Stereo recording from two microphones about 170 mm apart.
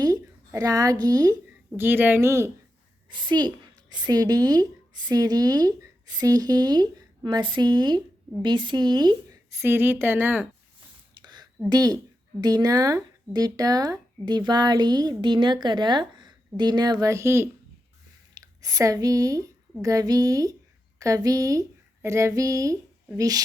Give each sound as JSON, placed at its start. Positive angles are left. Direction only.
{"t": 0.0, "sound": "a sound", "side_deg": -20}
{"t": 1.0, "sound": "speech", "side_deg": -20}
{"t": 3.1, "sound": "a child's voice", "side_deg": -25}
{"t": 9.6, "sound": "speech", "side_deg": -15}
{"t": 11.1, "sound": "a sound", "side_deg": -25}
{"t": 11.7, "sound": "speech", "side_deg": -20}